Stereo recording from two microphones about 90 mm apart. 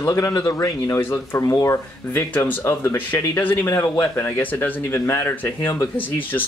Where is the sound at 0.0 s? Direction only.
40° left (ahead or behind).